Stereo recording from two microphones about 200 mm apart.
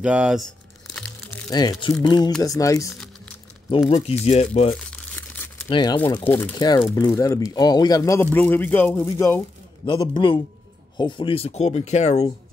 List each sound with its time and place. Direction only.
0.0 s speech: 5° right (ahead or behind)
0.9 s music: 5° left (ahead or behind)
1.5 s speech: 20° left (ahead or behind)
3.9 s speech: 30° left (ahead or behind)
4.7 s crumpling: 5° left (ahead or behind)
5.7 s speech: 20° left (ahead or behind)
5.9 s speech: 10° left (ahead or behind)
9.8 s speech: 25° left (ahead or behind)